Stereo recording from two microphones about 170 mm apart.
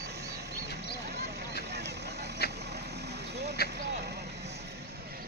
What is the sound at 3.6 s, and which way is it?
Vehicle, 65° left (ahead or behind).